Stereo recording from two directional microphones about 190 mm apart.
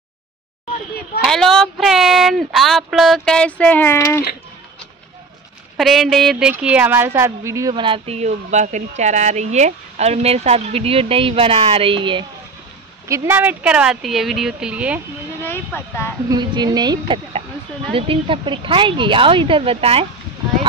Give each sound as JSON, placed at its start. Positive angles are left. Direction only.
{"t": 1.2, "sound": "speech", "side_deg": 0}
{"t": 5.8, "sound": "speech", "side_deg": 0}
{"t": 13.1, "sound": "speech", "side_deg": -15}
{"t": 15.4, "sound": "speech", "side_deg": 10}
{"t": 16.3, "sound": "speech", "side_deg": -20}